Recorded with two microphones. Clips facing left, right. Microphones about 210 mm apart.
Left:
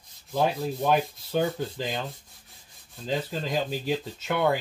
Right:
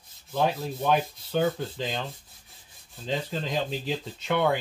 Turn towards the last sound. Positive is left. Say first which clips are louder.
# even
turn(degrees=0)  # may be behind; listen again after turning